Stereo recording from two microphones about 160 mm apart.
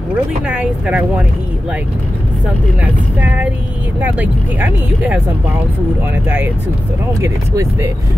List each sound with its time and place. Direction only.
0.5 s speech: 5° right (ahead or behind)
2.8 s speech: 10° right (ahead or behind)
6.2 s speech: 15° right (ahead or behind)